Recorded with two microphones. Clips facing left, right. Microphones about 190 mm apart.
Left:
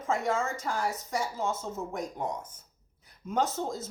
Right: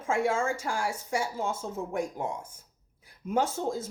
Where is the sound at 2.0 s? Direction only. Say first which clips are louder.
Right 4 dB; 10° right (ahead or behind).